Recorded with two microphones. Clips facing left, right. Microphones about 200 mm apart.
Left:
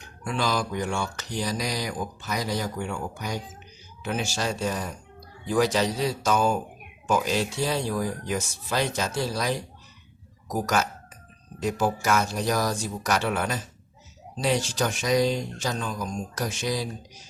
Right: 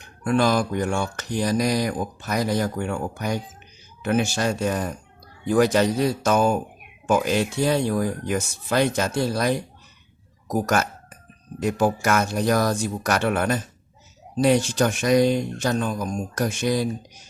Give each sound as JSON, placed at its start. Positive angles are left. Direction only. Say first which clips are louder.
{"t": 0.3, "sound": "speech", "louder": "right 7 dB", "side_deg": -55}